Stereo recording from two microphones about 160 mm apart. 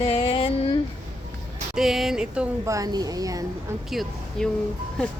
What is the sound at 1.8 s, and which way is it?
Speech, centre (ahead or behind).